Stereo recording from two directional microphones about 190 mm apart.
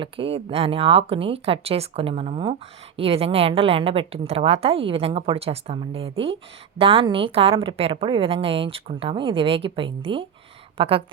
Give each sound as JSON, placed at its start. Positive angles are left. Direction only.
{"t": 0.0, "sound": "a woman's voice", "side_deg": -30}